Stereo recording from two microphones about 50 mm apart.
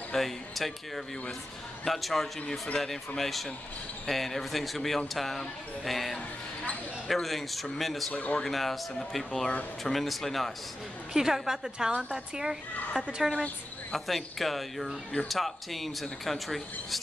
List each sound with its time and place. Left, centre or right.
0.1 s a man's voice: centre
8.1 s speech: left
8.4 s a man's voice: centre
11.1 s a woman's voice: centre
13.9 s a man's voice: centre